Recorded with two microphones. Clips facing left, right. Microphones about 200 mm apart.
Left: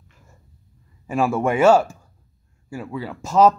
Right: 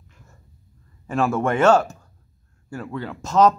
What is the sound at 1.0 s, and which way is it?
A man's voice, 10° left (ahead or behind).